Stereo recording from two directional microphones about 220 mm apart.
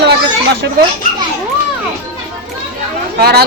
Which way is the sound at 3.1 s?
45° right (ahead or behind).